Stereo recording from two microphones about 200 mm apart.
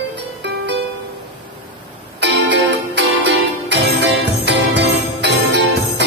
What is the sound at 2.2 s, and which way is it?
Music, 60° right (ahead or behind).